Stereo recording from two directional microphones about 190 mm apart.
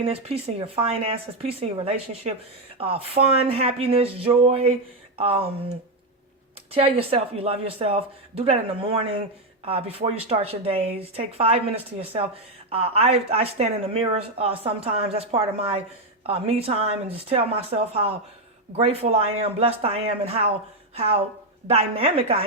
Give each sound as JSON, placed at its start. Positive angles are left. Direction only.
{"t": 0.0, "sound": "speech", "side_deg": -30}